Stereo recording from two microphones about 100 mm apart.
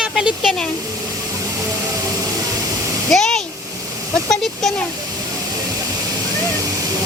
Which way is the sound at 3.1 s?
5° left (ahead or behind).